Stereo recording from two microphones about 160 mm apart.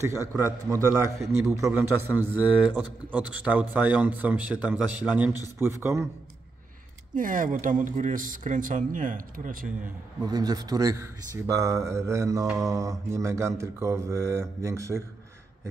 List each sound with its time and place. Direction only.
0.0 s a man's voice: 20° right (ahead or behind)
7.2 s speech: 55° right (ahead or behind)
10.2 s a man's voice: 25° right (ahead or behind)